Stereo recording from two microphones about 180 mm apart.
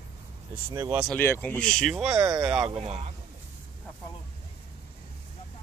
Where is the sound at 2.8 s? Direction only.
35° right (ahead or behind).